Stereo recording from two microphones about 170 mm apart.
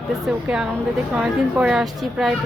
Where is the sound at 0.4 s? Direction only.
5° right (ahead or behind).